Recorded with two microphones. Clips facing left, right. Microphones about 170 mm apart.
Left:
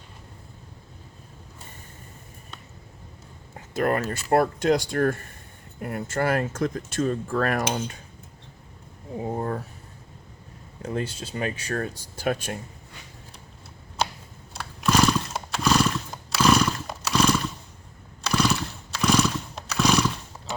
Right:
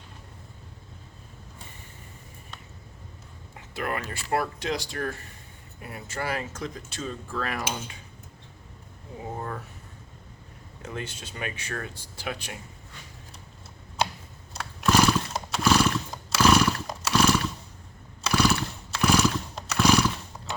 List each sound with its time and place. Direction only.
3.8 s speech: 45° left (ahead or behind)
9.3 s speech: 35° left (ahead or behind)
10.8 s speech: 30° left (ahead or behind); by 12.5 s 45° left (ahead or behind)
14.5 s horse: centre (ahead or behind)